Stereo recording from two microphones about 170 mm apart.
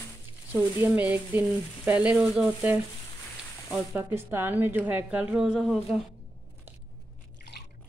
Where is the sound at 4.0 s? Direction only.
15° right (ahead or behind).